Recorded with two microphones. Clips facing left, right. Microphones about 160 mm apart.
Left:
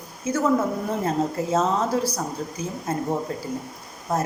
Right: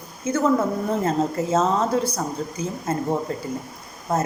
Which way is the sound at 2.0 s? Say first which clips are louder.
Right 1 dB; 25° right (ahead or behind).